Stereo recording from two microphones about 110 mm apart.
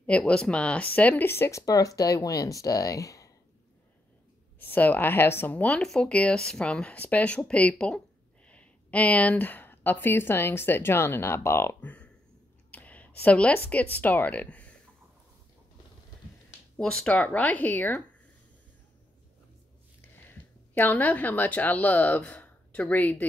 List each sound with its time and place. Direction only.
0.0 s speech: 10° left (ahead or behind)
1.7 s speech: 30° left (ahead or behind)
4.6 s speech: 15° left (ahead or behind)
16.7 s speech: 5° left (ahead or behind)
20.7 s speech: 15° left (ahead or behind)